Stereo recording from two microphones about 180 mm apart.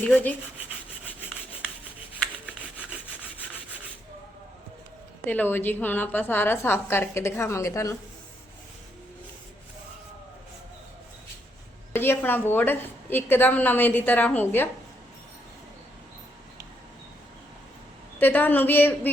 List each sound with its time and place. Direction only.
0.1 s a woman's voice: 10° left (ahead or behind)
5.2 s a woman's voice: 10° left (ahead or behind)
11.9 s a woman's voice: 10° left (ahead or behind)
18.2 s a woman's voice: 10° left (ahead or behind)